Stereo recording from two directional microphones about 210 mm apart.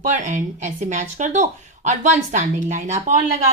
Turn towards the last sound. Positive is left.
turn(degrees=-35)  # may be behind; listen again after turning